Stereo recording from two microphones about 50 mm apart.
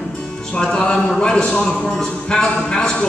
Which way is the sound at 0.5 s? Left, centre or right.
Centre.